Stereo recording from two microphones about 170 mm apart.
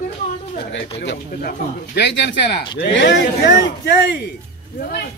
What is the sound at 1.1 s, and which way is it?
Speech, 75° left (ahead or behind).